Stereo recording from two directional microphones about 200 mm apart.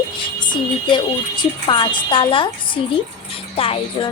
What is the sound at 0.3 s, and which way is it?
A woman's voice, 20° left (ahead or behind).